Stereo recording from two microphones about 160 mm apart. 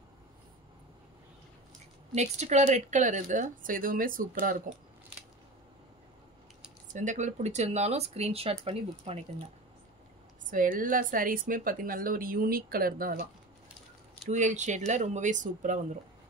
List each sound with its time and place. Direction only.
2.1 s speech: 45° right (ahead or behind); by 4.6 s 60° right (ahead or behind)
6.9 s speech: 50° right (ahead or behind)
10.5 s a woman's voice: 55° right (ahead or behind)
14.3 s speech: 50° right (ahead or behind)